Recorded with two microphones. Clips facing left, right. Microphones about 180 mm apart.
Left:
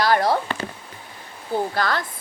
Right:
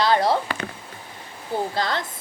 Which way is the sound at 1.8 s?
20° right (ahead or behind).